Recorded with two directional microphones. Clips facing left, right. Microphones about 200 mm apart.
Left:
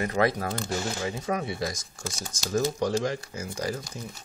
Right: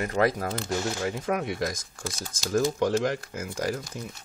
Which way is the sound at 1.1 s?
60° right (ahead or behind).